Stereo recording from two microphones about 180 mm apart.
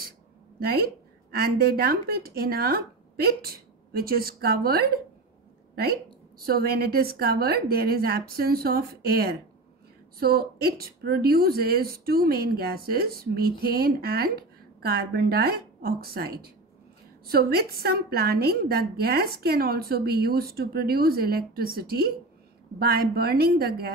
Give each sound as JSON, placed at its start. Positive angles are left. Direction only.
{"t": 0.6, "sound": "a woman's voice", "side_deg": -60}